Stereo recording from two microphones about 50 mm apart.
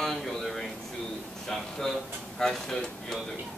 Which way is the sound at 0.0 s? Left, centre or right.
Centre.